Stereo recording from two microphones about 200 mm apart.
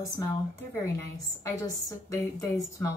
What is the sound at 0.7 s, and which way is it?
Speech, 10° left (ahead or behind).